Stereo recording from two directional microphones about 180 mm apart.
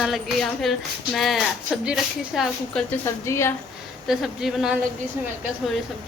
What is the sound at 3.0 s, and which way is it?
Speech, 15° left (ahead or behind).